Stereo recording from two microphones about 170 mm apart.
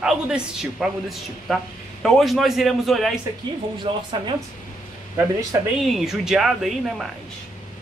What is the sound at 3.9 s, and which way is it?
Speech, 30° right (ahead or behind).